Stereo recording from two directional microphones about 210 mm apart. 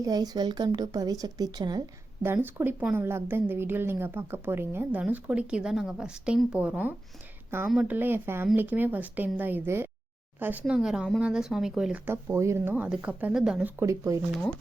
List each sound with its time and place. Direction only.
0.0 s a woman's voice: 20° right (ahead or behind)